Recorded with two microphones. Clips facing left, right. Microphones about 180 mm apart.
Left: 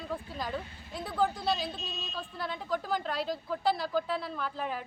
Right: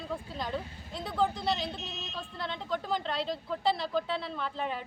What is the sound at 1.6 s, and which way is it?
Speech, 20° right (ahead or behind).